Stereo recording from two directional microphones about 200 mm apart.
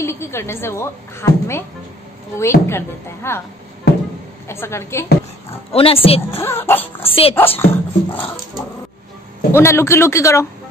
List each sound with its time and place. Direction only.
0.0 s a woman's voice: 15° left (ahead or behind)
4.5 s a woman's voice: 10° left (ahead or behind)
5.7 s speech: 30° left (ahead or behind)
6.4 s a woman's voice: 10° left (ahead or behind)
7.0 s speech: 30° left (ahead or behind)
7.3 s a woman's voice: 10° left (ahead or behind)
9.5 s a woman's voice: 15° left (ahead or behind)